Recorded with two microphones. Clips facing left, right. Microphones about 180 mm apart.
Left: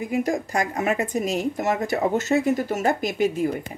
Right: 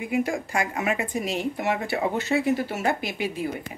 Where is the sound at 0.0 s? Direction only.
40° left (ahead or behind).